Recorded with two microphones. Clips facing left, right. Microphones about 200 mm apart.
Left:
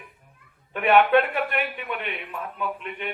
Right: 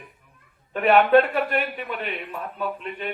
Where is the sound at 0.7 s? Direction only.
35° right (ahead or behind).